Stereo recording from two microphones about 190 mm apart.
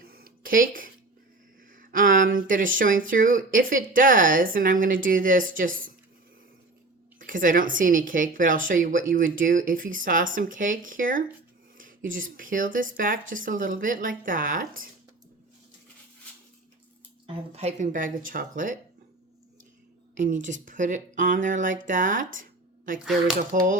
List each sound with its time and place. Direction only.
0.0 s a sound: 50° right (ahead or behind)
3.1 s a woman's voice: 45° right (ahead or behind)
7.2 s a woman's voice: 45° right (ahead or behind)
17.2 s a woman's voice: 35° right (ahead or behind)
20.1 s a woman's voice: 40° right (ahead or behind)
23.5 s a woman's voice: 45° right (ahead or behind)